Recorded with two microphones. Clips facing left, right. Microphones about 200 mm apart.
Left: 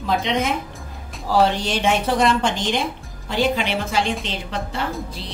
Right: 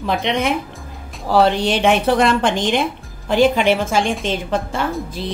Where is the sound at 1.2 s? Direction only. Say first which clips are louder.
Right 4 dB; 60° right (ahead or behind).